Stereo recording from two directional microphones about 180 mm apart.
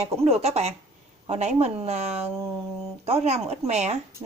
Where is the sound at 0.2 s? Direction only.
35° right (ahead or behind).